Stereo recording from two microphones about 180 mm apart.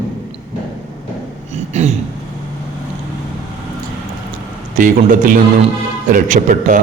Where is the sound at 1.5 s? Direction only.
40° right (ahead or behind).